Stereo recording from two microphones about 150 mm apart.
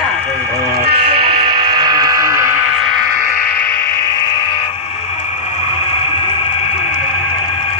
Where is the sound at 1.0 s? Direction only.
30° right (ahead or behind).